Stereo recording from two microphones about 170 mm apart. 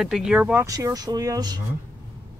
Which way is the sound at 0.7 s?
20° right (ahead or behind).